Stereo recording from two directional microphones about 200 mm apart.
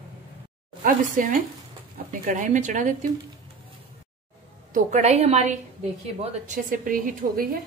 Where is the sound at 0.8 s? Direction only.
40° right (ahead or behind).